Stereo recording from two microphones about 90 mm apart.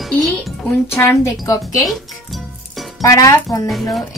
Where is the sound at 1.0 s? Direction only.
35° left (ahead or behind).